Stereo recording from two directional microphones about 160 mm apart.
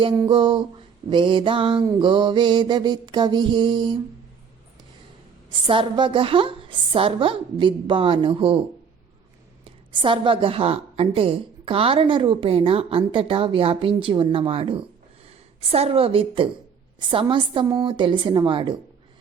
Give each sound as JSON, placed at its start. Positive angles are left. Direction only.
{"t": 0.2, "sound": "a woman's voice", "side_deg": -30}
{"t": 1.8, "sound": "music", "side_deg": -25}
{"t": 5.5, "sound": "a woman's voice", "side_deg": -30}
{"t": 9.6, "sound": "a woman's voice", "side_deg": -30}
{"t": 17.8, "sound": "music", "side_deg": -30}